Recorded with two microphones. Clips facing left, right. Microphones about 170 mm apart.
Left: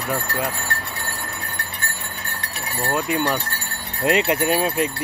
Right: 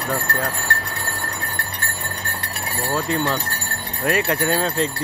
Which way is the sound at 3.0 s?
15° left (ahead or behind).